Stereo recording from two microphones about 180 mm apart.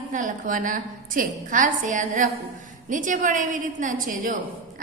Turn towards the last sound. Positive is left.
turn(degrees=-45)  # may be behind; listen again after turning